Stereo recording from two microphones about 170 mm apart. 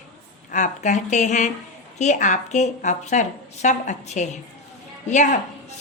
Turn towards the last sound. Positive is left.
turn(degrees=45)  # may be behind; listen again after turning